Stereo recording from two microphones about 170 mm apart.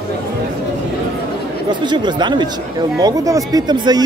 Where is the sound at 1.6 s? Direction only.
25° right (ahead or behind).